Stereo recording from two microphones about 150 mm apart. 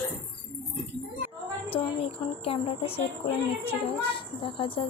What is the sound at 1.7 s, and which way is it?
A child's voice, 40° left (ahead or behind).